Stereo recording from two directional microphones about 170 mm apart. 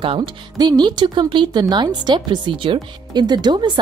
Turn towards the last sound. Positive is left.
turn(degrees=-25)  # may be behind; listen again after turning